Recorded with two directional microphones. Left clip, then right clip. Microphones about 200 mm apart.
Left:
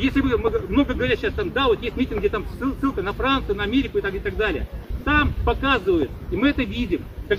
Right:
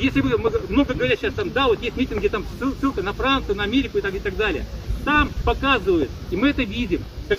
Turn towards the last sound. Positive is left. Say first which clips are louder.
# even
turn(degrees=0)  # may be behind; listen again after turning